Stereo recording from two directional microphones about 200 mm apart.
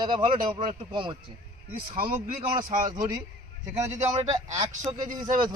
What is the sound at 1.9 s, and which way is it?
Speech, 45° right (ahead or behind).